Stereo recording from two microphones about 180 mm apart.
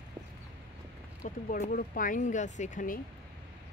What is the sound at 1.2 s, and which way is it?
Speech, 45° left (ahead or behind).